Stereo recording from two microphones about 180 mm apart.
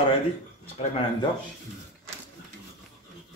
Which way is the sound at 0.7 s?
30° left (ahead or behind).